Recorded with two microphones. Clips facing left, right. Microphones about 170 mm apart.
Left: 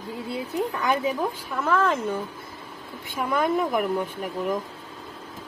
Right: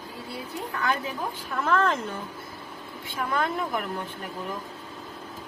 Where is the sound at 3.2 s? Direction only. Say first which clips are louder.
Left 4 dB; 10° left (ahead or behind).